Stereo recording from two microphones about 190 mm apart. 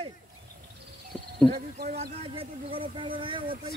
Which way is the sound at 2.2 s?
30° right (ahead or behind).